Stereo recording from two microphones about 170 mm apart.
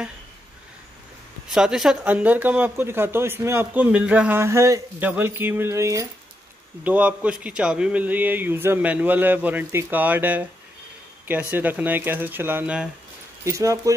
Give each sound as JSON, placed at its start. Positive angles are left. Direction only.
{"t": 1.5, "sound": "speech", "side_deg": -5}